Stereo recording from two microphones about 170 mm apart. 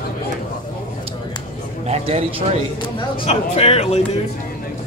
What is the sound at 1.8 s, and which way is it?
Speech, 40° right (ahead or behind).